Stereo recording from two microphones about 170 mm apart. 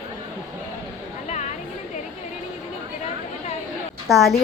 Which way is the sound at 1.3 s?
45° left (ahead or behind).